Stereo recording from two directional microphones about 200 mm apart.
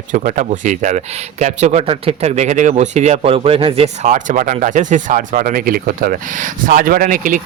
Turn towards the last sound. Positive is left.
turn(degrees=-40)  # may be behind; listen again after turning